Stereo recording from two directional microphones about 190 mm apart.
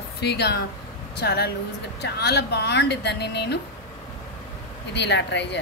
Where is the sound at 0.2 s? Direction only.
60° left (ahead or behind).